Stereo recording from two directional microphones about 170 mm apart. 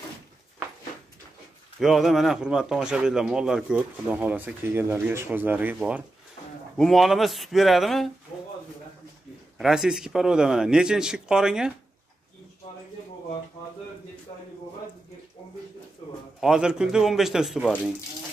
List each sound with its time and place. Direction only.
1.8 s speech: centre (ahead or behind)
9.6 s speech: 5° right (ahead or behind)
14.3 s a sound: 25° left (ahead or behind)
16.3 s speech: 5° right (ahead or behind)